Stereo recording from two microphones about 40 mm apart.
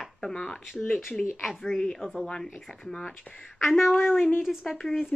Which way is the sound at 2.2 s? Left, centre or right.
Left.